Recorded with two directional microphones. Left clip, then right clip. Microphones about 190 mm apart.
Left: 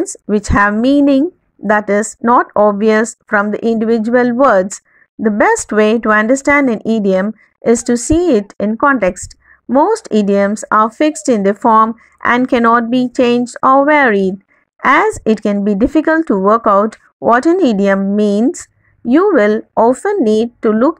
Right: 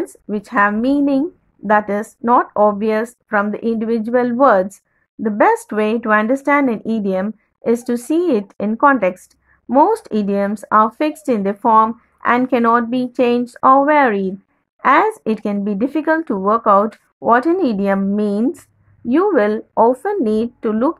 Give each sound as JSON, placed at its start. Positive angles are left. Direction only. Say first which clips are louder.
{"t": 0.1, "sound": "speech", "louder": "left 6 dB", "side_deg": 25}